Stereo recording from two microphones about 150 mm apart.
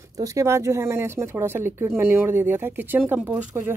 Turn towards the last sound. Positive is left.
turn(degrees=-15)  # may be behind; listen again after turning